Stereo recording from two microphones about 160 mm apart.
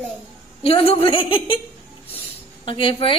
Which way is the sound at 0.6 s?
35° left (ahead or behind).